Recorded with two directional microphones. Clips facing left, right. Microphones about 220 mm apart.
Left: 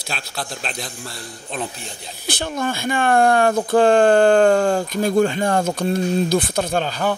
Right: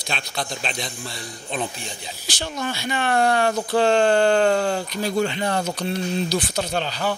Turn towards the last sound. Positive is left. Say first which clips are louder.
# left 4 dB
turn(degrees=50)  # may be behind; listen again after turning